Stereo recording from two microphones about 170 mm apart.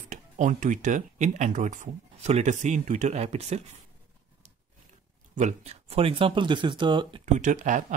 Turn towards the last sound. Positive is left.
turn(degrees=-45)  # may be behind; listen again after turning